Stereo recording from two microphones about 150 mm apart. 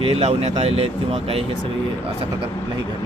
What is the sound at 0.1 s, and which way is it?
Speech, 45° right (ahead or behind).